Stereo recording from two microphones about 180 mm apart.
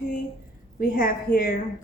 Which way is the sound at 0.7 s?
50° left (ahead or behind).